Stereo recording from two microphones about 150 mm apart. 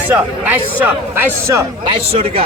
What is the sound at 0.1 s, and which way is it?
A man's voice, 10° right (ahead or behind).